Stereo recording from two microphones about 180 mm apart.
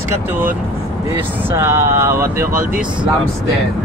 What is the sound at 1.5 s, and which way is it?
Speech, 15° right (ahead or behind).